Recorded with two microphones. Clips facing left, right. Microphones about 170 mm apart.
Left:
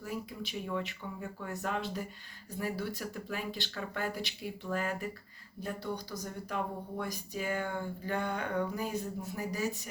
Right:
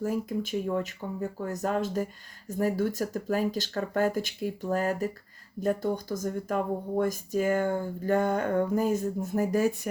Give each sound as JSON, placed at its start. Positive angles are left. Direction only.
{"t": 0.0, "sound": "speech", "side_deg": -45}